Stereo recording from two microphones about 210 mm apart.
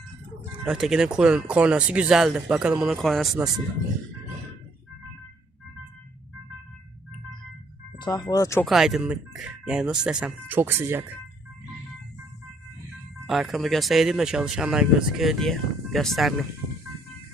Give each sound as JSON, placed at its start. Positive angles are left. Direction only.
{"t": 0.5, "sound": "speech", "side_deg": -5}
{"t": 7.9, "sound": "speech", "side_deg": 20}
{"t": 8.6, "sound": "speech", "side_deg": 0}
{"t": 13.2, "sound": "speech", "side_deg": 0}